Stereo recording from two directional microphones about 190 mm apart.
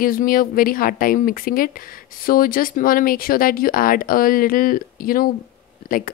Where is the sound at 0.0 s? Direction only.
50° left (ahead or behind).